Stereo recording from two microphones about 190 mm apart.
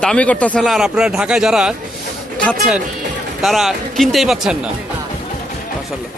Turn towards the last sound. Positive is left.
turn(degrees=-5)  # may be behind; listen again after turning